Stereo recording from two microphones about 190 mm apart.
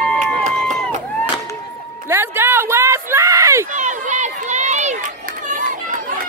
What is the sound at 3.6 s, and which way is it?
Run, 40° right (ahead or behind).